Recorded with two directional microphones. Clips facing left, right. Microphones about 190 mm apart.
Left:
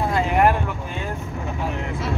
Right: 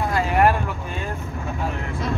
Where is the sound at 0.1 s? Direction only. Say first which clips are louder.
Even; 15° left (ahead or behind).